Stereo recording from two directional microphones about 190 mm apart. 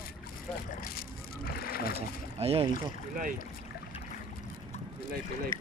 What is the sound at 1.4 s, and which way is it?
Boat, 50° left (ahead or behind).